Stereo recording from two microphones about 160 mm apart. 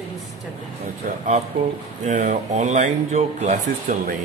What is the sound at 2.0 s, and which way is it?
Speech, 50° right (ahead or behind).